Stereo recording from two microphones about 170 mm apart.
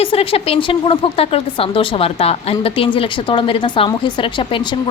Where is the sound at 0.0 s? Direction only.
35° left (ahead or behind).